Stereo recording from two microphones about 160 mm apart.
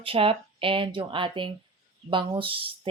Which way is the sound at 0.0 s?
35° right (ahead or behind).